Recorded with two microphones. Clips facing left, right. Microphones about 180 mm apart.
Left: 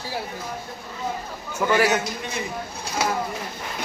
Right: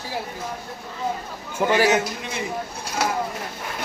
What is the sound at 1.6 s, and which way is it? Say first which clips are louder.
Speech: right 1 dB; 20° right (ahead or behind).